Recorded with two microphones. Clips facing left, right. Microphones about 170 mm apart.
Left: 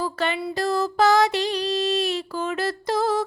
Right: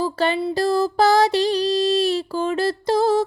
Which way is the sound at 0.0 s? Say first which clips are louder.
Right 5 dB; 30° right (ahead or behind).